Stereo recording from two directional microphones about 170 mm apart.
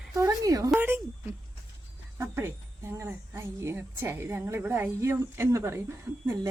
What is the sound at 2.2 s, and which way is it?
Speech, 15° right (ahead or behind).